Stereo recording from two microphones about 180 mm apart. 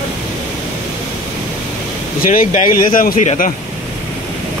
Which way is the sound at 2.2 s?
50° left (ahead or behind).